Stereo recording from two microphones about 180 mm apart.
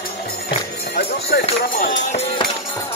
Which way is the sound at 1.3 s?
65° left (ahead or behind).